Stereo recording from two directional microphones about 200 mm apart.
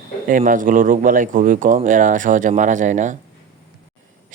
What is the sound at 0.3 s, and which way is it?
Speech, 45° right (ahead or behind).